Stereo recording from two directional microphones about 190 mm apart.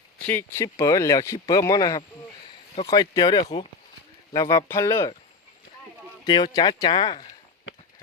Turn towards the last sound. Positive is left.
turn(degrees=25)  # may be behind; listen again after turning